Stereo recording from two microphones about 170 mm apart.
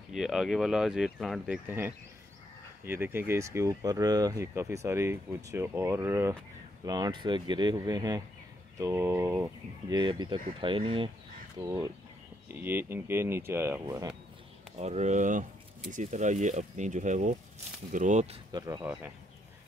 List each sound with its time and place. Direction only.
0.1 s speech: centre (ahead or behind)
1.7 s speech: 10° right (ahead or behind); by 11.1 s 30° right (ahead or behind)
11.6 s speech: 20° right (ahead or behind)
14.8 s speech: 40° right (ahead or behind)
18.5 s speech: 20° right (ahead or behind)